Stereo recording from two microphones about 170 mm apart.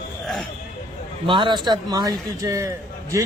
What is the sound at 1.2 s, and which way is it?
A man's voice, 30° right (ahead or behind).